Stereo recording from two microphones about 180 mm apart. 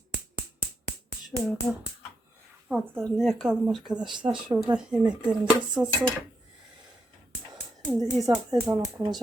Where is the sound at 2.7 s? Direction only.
10° right (ahead or behind).